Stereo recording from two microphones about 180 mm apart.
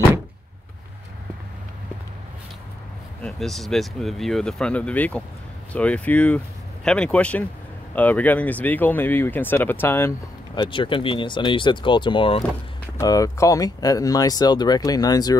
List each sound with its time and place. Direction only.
3.2 s speech: 5° left (ahead or behind)
10.5 s speech: 25° left (ahead or behind)